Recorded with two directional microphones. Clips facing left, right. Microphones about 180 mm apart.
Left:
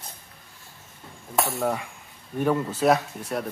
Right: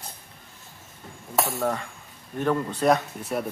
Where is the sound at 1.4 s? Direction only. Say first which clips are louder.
Left 1 dB; 10° left (ahead or behind).